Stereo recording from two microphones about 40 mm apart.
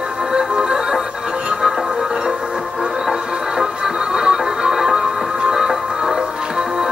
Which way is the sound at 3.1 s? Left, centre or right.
Centre.